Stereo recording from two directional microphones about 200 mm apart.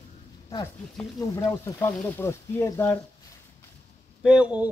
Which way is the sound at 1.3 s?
10° left (ahead or behind).